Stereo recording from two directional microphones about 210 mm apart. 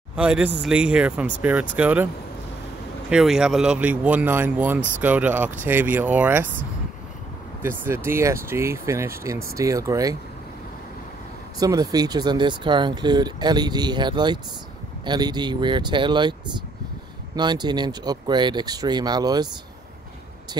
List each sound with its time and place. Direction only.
0.1 s speech: 5° right (ahead or behind)
3.1 s speech: 5° right (ahead or behind)
7.6 s speech: 10° right (ahead or behind)
11.6 s speech: 15° right (ahead or behind)
17.4 s speech: 20° right (ahead or behind)